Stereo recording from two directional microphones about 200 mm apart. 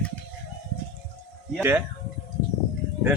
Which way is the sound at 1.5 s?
10° right (ahead or behind).